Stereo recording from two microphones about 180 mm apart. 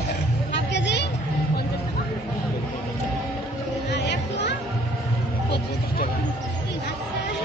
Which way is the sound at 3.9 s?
75° left (ahead or behind).